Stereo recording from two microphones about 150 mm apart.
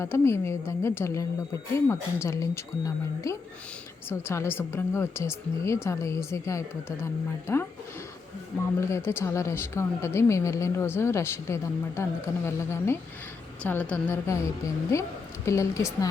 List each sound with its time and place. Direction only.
0.0 s a woman's voice: 15° left (ahead or behind)
9.0 s a woman's voice: 20° left (ahead or behind)